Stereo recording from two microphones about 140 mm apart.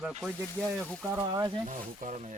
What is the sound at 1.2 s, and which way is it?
Speech, 30° right (ahead or behind).